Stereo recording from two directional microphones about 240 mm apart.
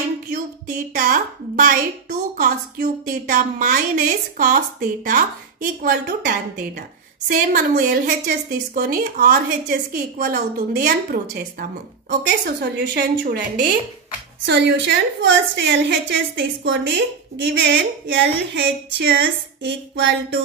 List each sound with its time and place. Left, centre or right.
0.3 s a woman's voice: right